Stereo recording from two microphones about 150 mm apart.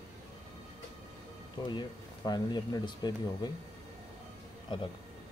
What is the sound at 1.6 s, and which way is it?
Speech, 30° left (ahead or behind).